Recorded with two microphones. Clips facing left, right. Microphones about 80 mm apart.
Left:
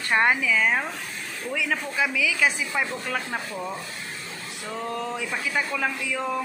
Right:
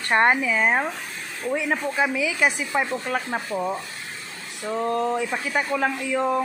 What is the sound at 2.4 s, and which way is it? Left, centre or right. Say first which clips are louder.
Speech: right 4 dB; right.